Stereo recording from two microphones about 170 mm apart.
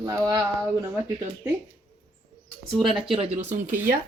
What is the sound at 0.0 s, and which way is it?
Speech, 20° right (ahead or behind).